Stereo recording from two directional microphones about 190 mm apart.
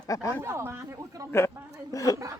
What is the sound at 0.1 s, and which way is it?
Speech, 15° left (ahead or behind).